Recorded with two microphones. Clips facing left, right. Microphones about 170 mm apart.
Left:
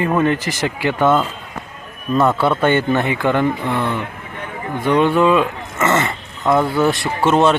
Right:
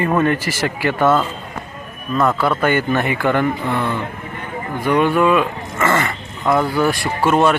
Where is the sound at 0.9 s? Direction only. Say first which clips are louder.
Even; 5° right (ahead or behind).